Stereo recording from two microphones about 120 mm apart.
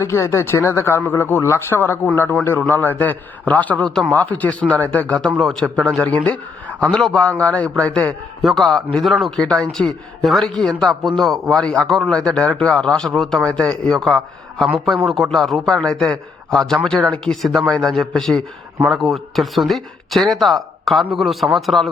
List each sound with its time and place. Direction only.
0.0 s a man's voice: 25° left (ahead or behind); by 21.8 s centre (ahead or behind)